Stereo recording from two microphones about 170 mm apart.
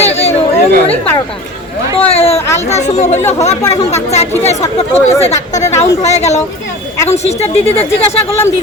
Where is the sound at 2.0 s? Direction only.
35° left (ahead or behind).